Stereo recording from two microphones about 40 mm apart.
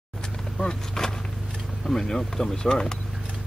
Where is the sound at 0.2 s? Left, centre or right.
Centre.